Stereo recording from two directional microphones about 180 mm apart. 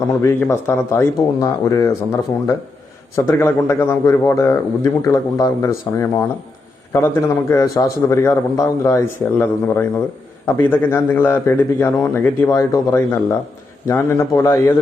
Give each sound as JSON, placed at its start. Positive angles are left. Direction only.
{"t": 0.2, "sound": "speech", "side_deg": 15}
{"t": 3.2, "sound": "speech", "side_deg": 15}